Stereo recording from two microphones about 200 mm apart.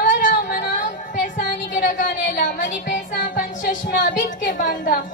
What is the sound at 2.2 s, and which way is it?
Music, 40° left (ahead or behind).